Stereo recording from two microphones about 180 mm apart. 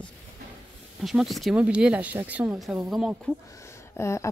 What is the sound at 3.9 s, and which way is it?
Speech, 15° left (ahead or behind).